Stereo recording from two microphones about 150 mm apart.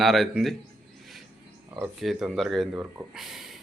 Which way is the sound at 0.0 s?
Centre (ahead or behind).